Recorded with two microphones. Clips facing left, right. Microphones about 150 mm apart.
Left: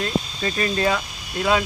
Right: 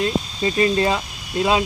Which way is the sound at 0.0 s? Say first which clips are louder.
Right 3 dB; 20° right (ahead or behind).